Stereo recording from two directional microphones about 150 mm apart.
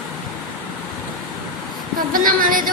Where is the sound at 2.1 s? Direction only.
70° right (ahead or behind).